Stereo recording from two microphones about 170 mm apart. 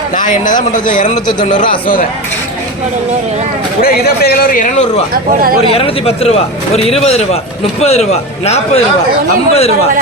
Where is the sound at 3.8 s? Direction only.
65° left (ahead or behind).